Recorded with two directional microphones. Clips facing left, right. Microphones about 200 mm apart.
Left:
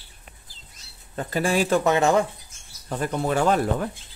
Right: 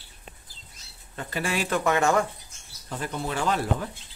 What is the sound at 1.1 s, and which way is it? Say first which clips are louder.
Speech: left 6 dB; 40° left (ahead or behind).